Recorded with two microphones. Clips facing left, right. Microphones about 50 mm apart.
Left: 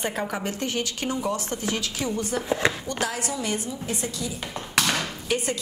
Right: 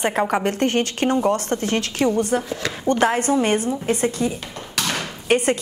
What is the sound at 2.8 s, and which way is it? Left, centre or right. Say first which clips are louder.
A woman's voice: right 10 dB; right.